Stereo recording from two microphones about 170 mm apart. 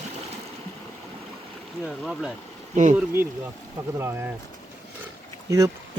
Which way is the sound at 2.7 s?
45° right (ahead or behind).